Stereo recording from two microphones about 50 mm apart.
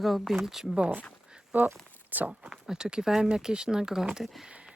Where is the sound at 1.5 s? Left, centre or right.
Right.